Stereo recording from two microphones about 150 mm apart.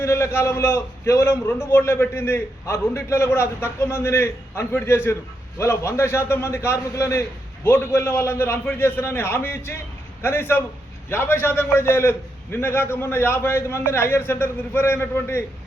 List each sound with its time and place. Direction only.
0.0 s a man's voice: 20° left (ahead or behind)